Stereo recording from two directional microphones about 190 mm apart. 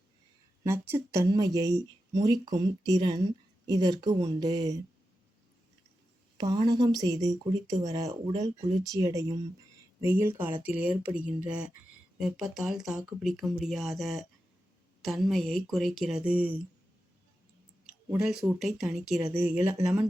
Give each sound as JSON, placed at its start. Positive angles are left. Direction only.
{"t": 0.6, "sound": "speech", "side_deg": -15}
{"t": 6.3, "sound": "speech", "side_deg": -20}
{"t": 17.8, "sound": "speech", "side_deg": -5}